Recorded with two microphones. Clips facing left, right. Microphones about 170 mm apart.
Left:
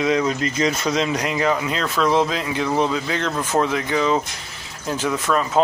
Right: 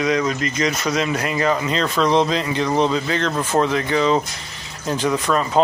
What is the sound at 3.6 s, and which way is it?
Speech, 10° left (ahead or behind).